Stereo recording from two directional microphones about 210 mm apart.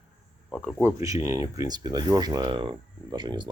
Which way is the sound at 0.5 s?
Centre (ahead or behind).